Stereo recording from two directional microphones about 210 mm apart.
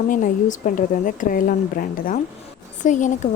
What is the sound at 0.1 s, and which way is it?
A woman's voice, 40° left (ahead or behind).